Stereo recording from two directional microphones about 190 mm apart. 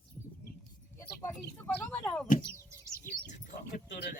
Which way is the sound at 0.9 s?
15° left (ahead or behind).